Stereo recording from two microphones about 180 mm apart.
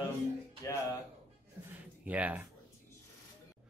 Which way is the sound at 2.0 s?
10° right (ahead or behind).